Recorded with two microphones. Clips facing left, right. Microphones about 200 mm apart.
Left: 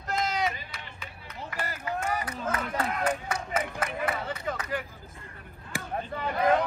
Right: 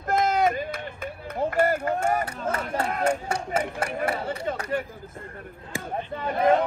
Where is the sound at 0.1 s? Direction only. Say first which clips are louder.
Right 7 dB; 50° right (ahead or behind).